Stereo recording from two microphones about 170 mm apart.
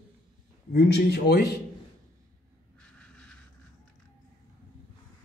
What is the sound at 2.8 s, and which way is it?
Vehicle, 5° left (ahead or behind).